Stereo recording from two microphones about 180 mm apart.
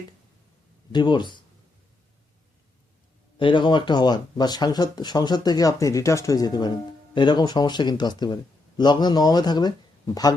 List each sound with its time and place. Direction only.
0.9 s speech: 25° left (ahead or behind)
3.3 s speech: 25° left (ahead or behind)